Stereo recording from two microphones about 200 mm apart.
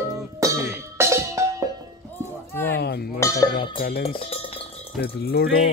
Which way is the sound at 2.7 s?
55° left (ahead or behind).